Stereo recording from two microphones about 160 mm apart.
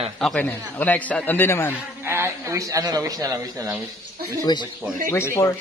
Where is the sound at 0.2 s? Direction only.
5° left (ahead or behind).